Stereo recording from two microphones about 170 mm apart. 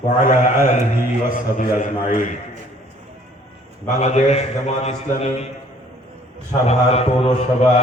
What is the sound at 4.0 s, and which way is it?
A man's voice, 40° left (ahead or behind).